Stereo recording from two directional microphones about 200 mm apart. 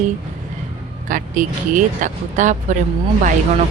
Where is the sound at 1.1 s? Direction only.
40° right (ahead or behind).